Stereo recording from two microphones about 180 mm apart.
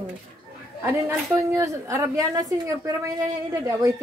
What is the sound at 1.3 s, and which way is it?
A woman's voice, 15° right (ahead or behind).